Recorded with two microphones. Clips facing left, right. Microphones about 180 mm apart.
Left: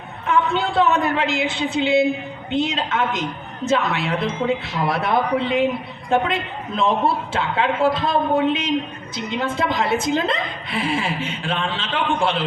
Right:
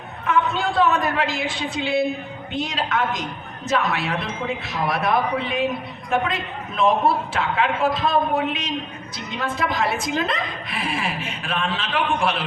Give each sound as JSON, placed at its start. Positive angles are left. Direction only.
{"t": 0.8, "sound": "a woman's voice", "side_deg": 25}